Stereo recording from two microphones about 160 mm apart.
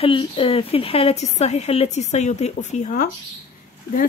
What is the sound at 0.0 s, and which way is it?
Speech, 35° left (ahead or behind).